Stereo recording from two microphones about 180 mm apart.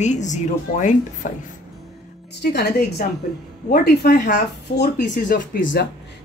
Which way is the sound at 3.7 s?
55° left (ahead or behind).